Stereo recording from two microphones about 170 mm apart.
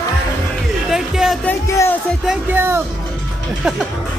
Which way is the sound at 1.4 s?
15° left (ahead or behind).